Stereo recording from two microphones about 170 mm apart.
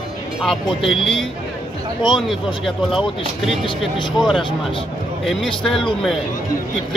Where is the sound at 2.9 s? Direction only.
Centre (ahead or behind).